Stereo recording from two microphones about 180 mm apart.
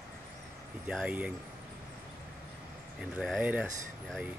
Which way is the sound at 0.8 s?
5° right (ahead or behind).